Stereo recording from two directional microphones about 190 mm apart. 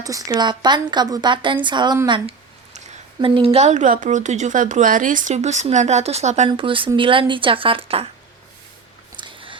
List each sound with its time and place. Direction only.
0.0 s speech: 20° right (ahead or behind)
9.1 s biting: 25° right (ahead or behind)